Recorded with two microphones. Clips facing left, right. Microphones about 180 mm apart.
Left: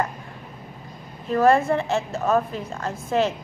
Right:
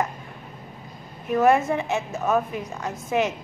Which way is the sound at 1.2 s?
15° right (ahead or behind).